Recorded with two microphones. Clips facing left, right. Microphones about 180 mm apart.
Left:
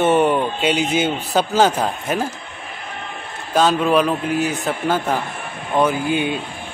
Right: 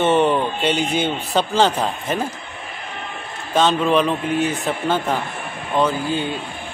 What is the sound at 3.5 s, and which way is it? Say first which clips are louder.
A man's voice: left 1 dB; 5° left (ahead or behind).